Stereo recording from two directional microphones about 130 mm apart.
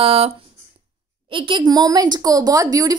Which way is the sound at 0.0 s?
45° right (ahead or behind).